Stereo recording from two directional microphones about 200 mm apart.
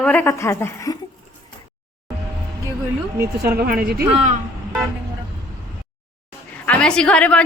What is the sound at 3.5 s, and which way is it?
Speech, 50° right (ahead or behind).